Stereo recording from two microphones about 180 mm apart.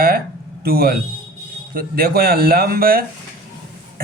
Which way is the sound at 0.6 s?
55° right (ahead or behind).